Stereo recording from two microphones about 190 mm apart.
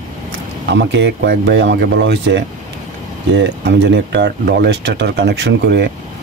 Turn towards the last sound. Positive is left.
turn(degrees=-65)  # may be behind; listen again after turning